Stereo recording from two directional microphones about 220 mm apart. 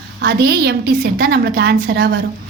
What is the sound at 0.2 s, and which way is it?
A woman's voice, 50° right (ahead or behind).